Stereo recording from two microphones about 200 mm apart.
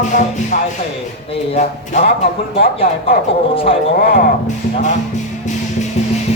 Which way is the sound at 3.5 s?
25° left (ahead or behind).